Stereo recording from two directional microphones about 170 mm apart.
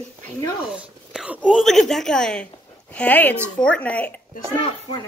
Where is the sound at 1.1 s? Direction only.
5° right (ahead or behind).